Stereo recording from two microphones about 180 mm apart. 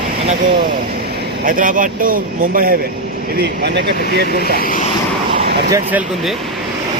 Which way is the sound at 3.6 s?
65° right (ahead or behind).